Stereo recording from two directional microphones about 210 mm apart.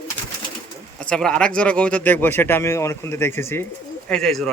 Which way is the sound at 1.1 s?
5° left (ahead or behind).